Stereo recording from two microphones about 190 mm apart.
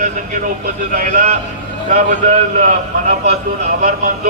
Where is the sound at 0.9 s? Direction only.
45° right (ahead or behind).